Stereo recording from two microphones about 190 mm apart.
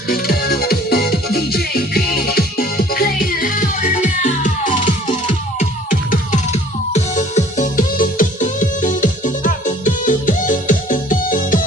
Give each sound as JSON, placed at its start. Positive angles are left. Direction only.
{"t": 0.1, "sound": "music", "side_deg": 55}